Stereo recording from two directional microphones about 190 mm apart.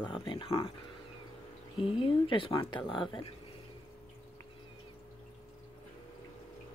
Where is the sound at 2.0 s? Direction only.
25° left (ahead or behind).